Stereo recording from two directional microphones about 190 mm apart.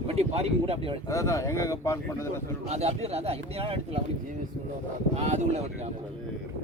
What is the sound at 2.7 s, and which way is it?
Speech, 35° right (ahead or behind).